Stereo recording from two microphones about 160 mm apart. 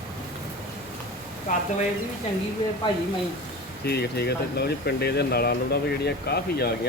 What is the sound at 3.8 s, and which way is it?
Speech, 90° left.